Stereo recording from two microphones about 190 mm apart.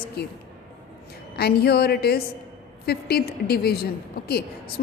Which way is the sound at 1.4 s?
55° left (ahead or behind).